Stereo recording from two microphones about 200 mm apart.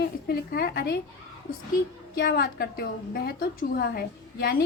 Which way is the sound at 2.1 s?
50° left (ahead or behind).